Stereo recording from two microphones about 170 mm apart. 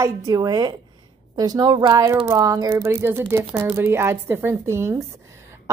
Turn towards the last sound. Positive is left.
turn(degrees=-15)  # may be behind; listen again after turning